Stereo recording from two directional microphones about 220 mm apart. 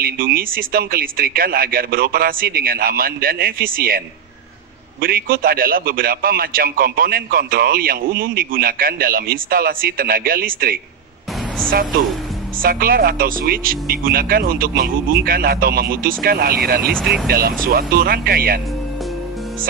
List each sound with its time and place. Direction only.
0.0 s a man's voice: 40° right (ahead or behind)
5.0 s a man's voice: 40° right (ahead or behind)
12.6 s a man's voice: 40° right (ahead or behind)
16.9 s speech: centre (ahead or behind)
17.3 s speech: 45° right (ahead or behind)